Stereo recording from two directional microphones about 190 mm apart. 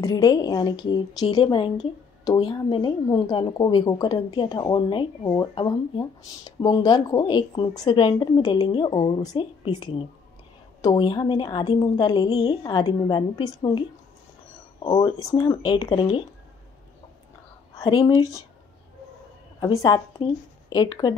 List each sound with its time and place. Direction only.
0.0 s a woman's voice: 20° left (ahead or behind)
17.8 s a woman's voice: 20° left (ahead or behind)
19.6 s a woman's voice: 20° left (ahead or behind)